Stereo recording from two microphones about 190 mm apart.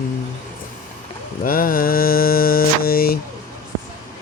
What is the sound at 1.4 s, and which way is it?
Mantra, 50° left (ahead or behind).